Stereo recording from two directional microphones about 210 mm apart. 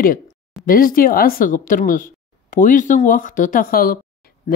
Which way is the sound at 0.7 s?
40° left (ahead or behind).